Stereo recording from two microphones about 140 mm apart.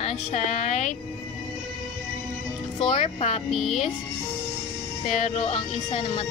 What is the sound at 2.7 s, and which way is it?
Speech, 40° left (ahead or behind).